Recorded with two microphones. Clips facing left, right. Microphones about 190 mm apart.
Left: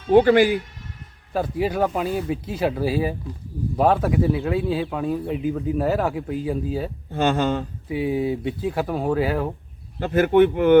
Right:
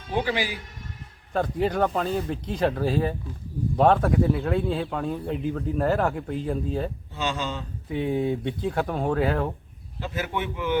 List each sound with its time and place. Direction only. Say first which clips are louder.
0.1 s speech: left 12 dB; 55° left (ahead or behind)
1.3 s a man's voice: left 1 dB; 5° left (ahead or behind)
7.1 s speech: left 13 dB; 55° left (ahead or behind)
7.9 s a man's voice: left 2 dB; 5° left (ahead or behind)
10.0 s speech: left 14 dB; 55° left (ahead or behind)